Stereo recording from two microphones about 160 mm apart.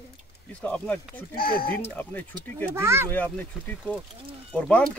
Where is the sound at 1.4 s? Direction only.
65° left (ahead or behind).